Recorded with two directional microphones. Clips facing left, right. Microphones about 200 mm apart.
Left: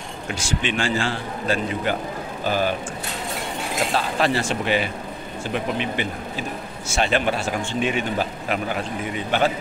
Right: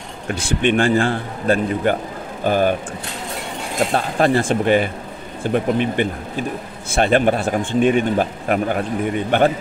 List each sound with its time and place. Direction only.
0.3 s a man's voice: 55° right (ahead or behind)
3.9 s speech: 50° right (ahead or behind)